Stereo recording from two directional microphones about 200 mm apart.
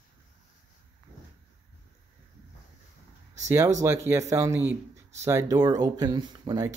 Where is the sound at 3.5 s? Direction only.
15° right (ahead or behind).